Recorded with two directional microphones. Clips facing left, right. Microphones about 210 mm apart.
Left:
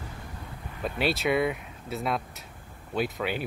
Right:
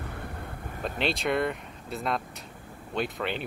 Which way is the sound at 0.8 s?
5° left (ahead or behind).